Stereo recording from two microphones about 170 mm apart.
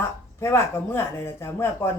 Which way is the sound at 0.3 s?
15° left (ahead or behind).